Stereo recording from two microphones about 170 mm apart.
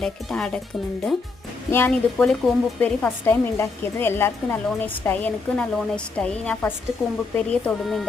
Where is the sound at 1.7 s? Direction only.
10° left (ahead or behind).